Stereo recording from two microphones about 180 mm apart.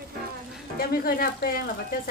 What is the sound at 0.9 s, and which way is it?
Speech, 55° left (ahead or behind).